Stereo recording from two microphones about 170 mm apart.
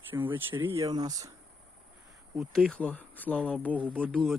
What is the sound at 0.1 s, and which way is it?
Speech, 10° right (ahead or behind).